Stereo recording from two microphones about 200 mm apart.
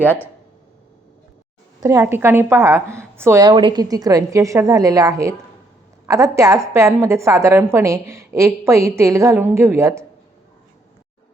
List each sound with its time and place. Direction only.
0.0 s speech: 10° left (ahead or behind)
1.8 s a woman's voice: 15° right (ahead or behind)